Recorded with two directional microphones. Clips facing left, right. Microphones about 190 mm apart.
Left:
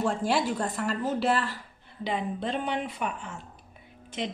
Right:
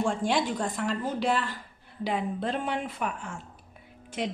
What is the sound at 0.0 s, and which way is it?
A woman's voice, 5° left (ahead or behind).